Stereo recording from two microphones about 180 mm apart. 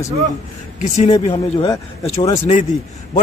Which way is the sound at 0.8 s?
40° left (ahead or behind).